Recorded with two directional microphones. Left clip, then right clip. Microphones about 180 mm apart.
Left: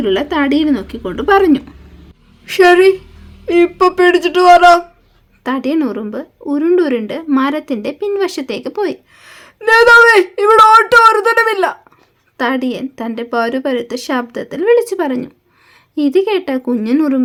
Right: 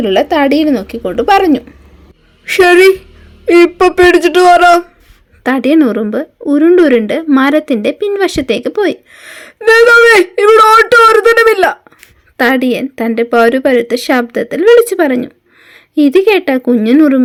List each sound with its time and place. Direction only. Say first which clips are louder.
0.0 s a woman's voice: right 5 dB; 25° right (ahead or behind)